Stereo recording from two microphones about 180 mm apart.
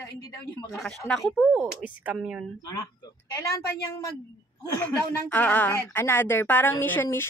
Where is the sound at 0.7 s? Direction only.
5° left (ahead or behind).